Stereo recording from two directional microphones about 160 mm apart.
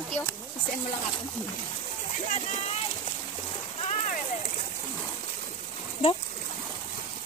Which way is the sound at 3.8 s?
45° left (ahead or behind).